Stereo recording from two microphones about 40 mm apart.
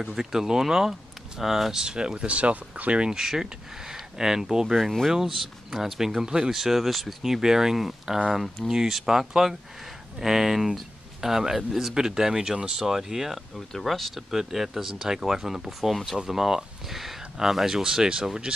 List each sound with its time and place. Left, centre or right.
0.0 s speech: centre; by 3.1 s right
3.1 s speech: centre
6.6 s speech: centre
7.2 s speech: centre
13.7 s speech: centre
14.3 s speech: centre